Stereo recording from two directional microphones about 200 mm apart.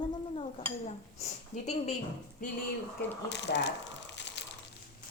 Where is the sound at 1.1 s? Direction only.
35° left (ahead or behind).